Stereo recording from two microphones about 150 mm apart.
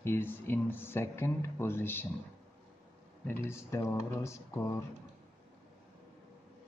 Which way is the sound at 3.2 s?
15° left (ahead or behind).